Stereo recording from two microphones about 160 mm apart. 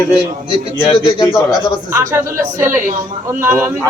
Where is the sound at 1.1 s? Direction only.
25° left (ahead or behind).